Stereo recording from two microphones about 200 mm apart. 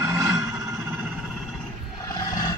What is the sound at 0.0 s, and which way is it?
Vehicle, 15° right (ahead or behind).